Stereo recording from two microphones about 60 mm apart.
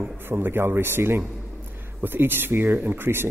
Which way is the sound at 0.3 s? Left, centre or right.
Right.